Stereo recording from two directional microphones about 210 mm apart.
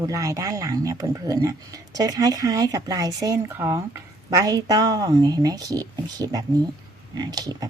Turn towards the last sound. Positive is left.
turn(degrees=-20)  # may be behind; listen again after turning